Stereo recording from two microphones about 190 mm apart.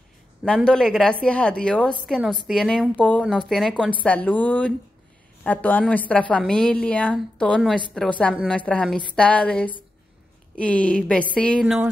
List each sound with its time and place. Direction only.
0.7 s a woman's voice: 5° left (ahead or behind)
11.6 s a woman's voice: 5° right (ahead or behind)